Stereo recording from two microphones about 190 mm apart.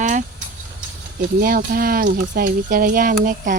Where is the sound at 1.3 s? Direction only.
50° right (ahead or behind).